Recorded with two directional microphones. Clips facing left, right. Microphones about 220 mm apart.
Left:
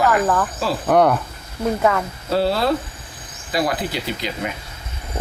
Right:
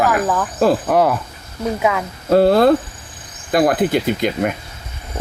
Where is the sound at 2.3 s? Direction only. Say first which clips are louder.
Right 8 dB; 50° right (ahead or behind).